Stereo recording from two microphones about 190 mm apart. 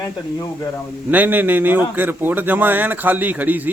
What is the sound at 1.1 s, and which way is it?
A man's voice, 10° right (ahead or behind).